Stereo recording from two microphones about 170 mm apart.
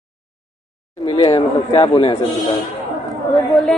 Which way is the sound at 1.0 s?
35° left (ahead or behind).